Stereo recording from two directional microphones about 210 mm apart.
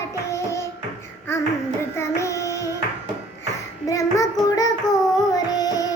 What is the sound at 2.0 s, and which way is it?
Child singing, 15° left (ahead or behind).